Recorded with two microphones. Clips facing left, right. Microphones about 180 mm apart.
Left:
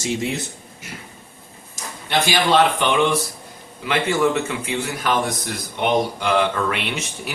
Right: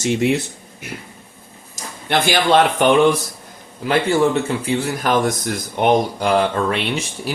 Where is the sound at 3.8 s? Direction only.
35° right (ahead or behind).